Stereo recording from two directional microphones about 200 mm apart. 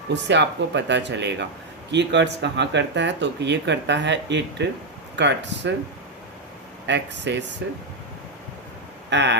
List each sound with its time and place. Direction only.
0.1 s speech: 60° right (ahead or behind)
6.8 s speech: 60° right (ahead or behind)
9.0 s speech: 60° right (ahead or behind)